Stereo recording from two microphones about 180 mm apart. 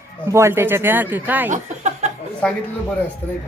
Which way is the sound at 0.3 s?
15° right (ahead or behind).